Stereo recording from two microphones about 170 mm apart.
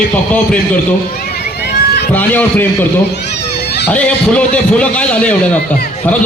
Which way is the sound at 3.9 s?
5° left (ahead or behind).